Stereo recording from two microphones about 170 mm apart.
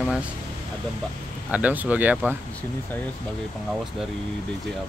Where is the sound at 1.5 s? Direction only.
10° right (ahead or behind).